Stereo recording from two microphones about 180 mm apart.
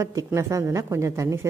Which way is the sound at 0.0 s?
15° right (ahead or behind).